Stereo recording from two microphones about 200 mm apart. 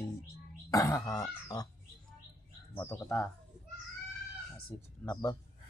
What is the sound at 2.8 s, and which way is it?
Speech, 10° left (ahead or behind).